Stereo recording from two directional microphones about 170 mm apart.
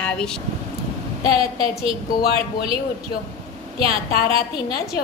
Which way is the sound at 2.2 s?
70° left (ahead or behind).